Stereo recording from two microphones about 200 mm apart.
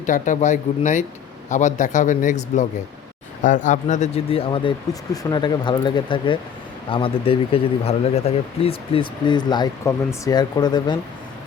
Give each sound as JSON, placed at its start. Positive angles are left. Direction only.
{"t": 0.0, "sound": "speech", "side_deg": 40}